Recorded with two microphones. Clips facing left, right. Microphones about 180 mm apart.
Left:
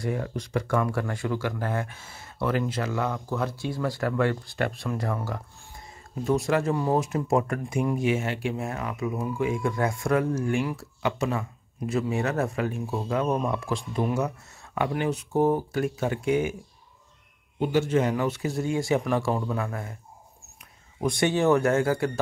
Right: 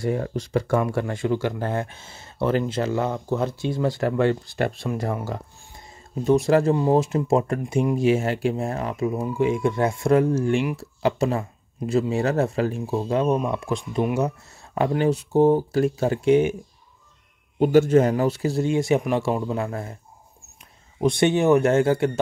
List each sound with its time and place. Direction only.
0.0 s speech: 30° right (ahead or behind)
8.1 s speech: 35° right (ahead or behind)
17.6 s speech: 45° right (ahead or behind); by 20.0 s 30° right (ahead or behind)
21.0 s speech: 25° right (ahead or behind)